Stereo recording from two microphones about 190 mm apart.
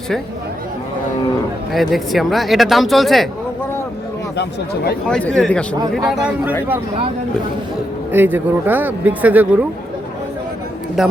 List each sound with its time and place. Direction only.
1.7 s speech: centre (ahead or behind)
4.4 s speech: 55° left (ahead or behind)
5.0 s speech: 5° left (ahead or behind)
8.1 s speech: 10° right (ahead or behind)
11.0 s speech: centre (ahead or behind)